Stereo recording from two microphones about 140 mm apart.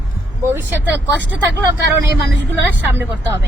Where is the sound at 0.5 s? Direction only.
15° right (ahead or behind).